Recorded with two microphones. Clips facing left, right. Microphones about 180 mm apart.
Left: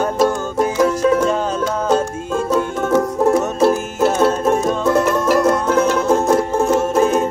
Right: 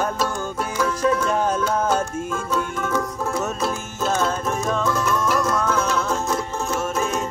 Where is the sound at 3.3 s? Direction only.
65° left (ahead or behind).